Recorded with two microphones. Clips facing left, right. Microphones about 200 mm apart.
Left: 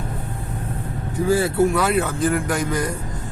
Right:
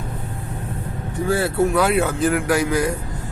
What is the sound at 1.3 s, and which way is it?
A man's voice, centre (ahead or behind).